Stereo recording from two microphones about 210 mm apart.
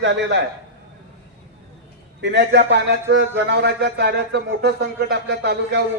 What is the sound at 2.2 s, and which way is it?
Speech, 55° right (ahead or behind).